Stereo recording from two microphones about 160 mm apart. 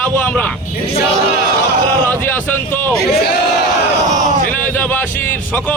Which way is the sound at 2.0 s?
10° left (ahead or behind).